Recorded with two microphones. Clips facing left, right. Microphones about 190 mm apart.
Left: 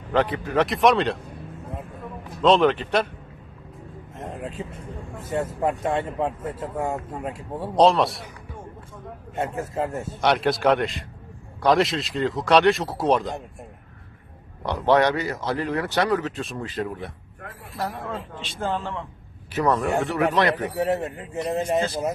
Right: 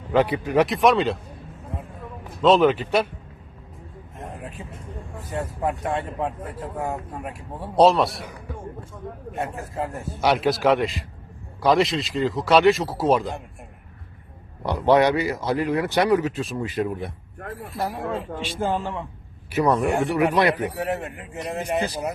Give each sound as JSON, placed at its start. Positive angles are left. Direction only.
{"t": 0.1, "sound": "a man's voice", "side_deg": -10}
{"t": 0.7, "sound": "speech", "side_deg": 0}
{"t": 2.4, "sound": "speech", "side_deg": -5}
{"t": 4.2, "sound": "vehicle", "side_deg": 20}
{"t": 5.3, "sound": "speech", "side_deg": 25}
{"t": 7.8, "sound": "speech", "side_deg": 0}
{"t": 9.3, "sound": "speech", "side_deg": 25}
{"t": 10.2, "sound": "speech", "side_deg": 0}
{"t": 14.6, "sound": "a man's voice", "side_deg": -10}
{"t": 16.6, "sound": "a man's voice", "side_deg": -15}
{"t": 20.8, "sound": "a man's voice", "side_deg": 35}